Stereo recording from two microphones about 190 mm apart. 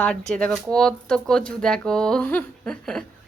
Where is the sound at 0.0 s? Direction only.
5° left (ahead or behind).